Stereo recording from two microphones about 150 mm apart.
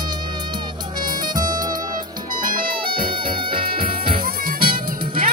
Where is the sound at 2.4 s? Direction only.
70° right (ahead or behind).